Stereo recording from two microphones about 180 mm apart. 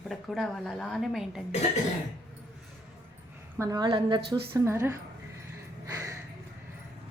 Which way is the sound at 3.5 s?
20° right (ahead or behind).